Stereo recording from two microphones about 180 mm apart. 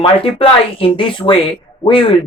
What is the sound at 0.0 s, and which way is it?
Speech, 30° left (ahead or behind).